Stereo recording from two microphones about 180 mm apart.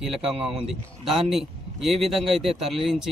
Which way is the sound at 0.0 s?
Centre (ahead or behind).